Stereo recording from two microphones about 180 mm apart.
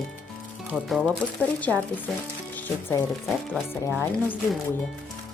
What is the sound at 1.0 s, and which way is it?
Speech, 10° left (ahead or behind).